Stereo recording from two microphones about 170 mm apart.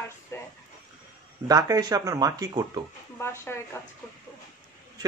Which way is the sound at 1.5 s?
20° right (ahead or behind).